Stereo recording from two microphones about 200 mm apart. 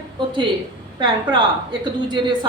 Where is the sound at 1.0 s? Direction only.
20° right (ahead or behind).